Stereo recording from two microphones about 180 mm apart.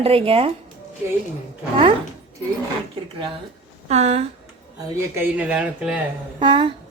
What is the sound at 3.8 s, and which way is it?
Speech, 35° right (ahead or behind).